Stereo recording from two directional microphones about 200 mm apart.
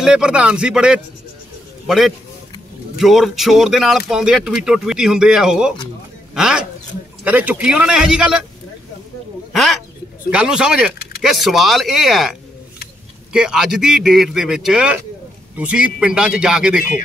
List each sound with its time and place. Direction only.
0.0 s speech: 5° right (ahead or behind)
9.5 s speech: centre (ahead or behind)